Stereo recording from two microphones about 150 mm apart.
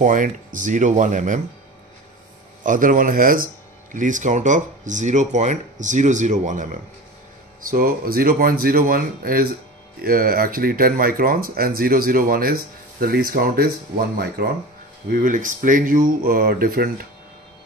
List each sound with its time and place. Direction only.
0.0 s speech: 60° right (ahead or behind)
2.6 s speech: 60° right (ahead or behind)
3.9 s speech: 55° right (ahead or behind)
7.7 s speech: 80° right
15.0 s speech: 65° right (ahead or behind)